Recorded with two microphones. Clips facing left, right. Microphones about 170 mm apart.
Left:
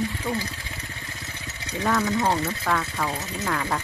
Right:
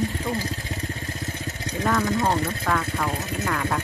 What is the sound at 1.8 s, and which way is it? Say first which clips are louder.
Speech: even; centre (ahead or behind).